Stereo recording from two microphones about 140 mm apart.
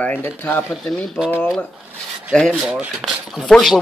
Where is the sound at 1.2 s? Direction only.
15° left (ahead or behind).